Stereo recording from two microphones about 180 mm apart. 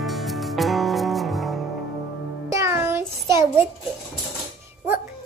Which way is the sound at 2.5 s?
15° right (ahead or behind).